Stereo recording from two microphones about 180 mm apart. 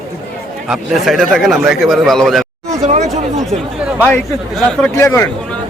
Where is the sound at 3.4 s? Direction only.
5° right (ahead or behind).